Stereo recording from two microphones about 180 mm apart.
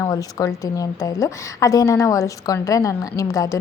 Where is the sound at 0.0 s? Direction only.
20° left (ahead or behind).